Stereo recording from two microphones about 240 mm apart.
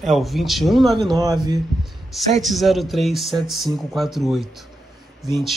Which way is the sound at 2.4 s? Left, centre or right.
Centre.